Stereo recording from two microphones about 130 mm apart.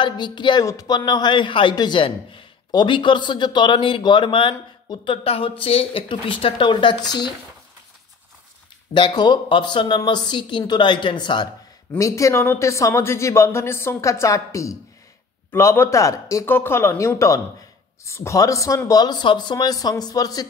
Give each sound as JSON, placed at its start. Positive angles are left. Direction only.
{"t": 0.0, "sound": "a man's voice", "side_deg": 35}
{"t": 8.9, "sound": "a man's voice", "side_deg": 35}
{"t": 11.9, "sound": "speech", "side_deg": 25}